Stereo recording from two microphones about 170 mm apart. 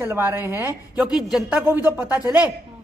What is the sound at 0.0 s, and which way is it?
A woman's voice, 15° right (ahead or behind).